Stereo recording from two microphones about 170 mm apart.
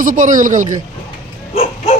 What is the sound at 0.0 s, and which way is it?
Speech, 50° right (ahead or behind).